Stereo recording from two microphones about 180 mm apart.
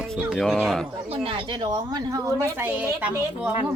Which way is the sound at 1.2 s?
30° right (ahead or behind).